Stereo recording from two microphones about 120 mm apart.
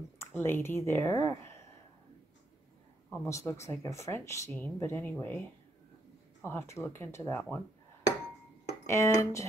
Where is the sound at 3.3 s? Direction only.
25° left (ahead or behind).